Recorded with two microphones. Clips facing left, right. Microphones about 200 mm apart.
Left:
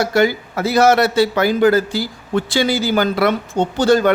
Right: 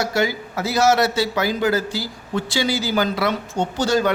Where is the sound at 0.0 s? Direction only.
55° left (ahead or behind).